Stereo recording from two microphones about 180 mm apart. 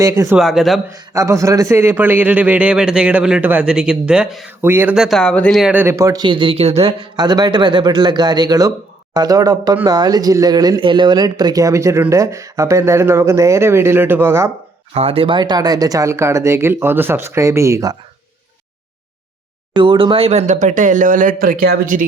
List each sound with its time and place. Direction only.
0.0 s speech: 20° right (ahead or behind)
0.3 s a man's voice: centre (ahead or behind)
0.9 s speech: 15° right (ahead or behind)
14.9 s speech: 30° right (ahead or behind)
19.7 s speech: 30° right (ahead or behind); by 22.0 s 50° right (ahead or behind)